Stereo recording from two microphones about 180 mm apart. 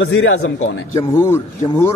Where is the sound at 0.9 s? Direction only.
15° left (ahead or behind).